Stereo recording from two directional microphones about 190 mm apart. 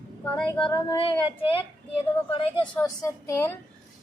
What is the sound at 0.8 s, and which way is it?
Speech, 25° left (ahead or behind).